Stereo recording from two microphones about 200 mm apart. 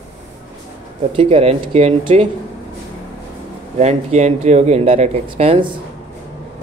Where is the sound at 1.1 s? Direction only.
25° right (ahead or behind).